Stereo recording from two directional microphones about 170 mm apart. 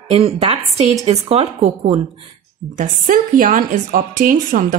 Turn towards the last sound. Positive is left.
turn(degrees=-55)  # may be behind; listen again after turning